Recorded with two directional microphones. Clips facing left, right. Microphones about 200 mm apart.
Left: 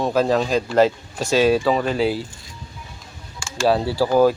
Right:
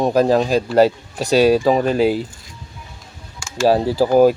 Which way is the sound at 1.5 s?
15° right (ahead or behind).